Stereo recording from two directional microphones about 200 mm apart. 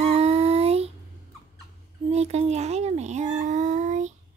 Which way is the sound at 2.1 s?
35° right (ahead or behind).